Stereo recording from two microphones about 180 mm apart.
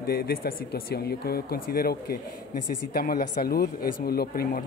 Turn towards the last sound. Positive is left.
turn(degrees=60)  # may be behind; listen again after turning